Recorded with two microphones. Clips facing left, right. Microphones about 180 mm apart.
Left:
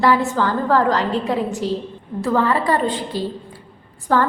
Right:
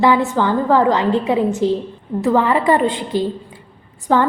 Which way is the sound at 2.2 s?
20° right (ahead or behind).